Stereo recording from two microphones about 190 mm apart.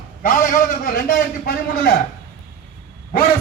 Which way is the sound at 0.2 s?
45° left (ahead or behind).